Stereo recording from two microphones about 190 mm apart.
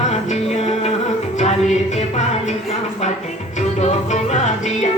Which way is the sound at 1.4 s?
35° left (ahead or behind).